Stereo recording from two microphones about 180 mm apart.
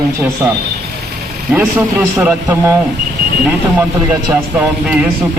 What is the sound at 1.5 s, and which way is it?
Speech, 10° right (ahead or behind).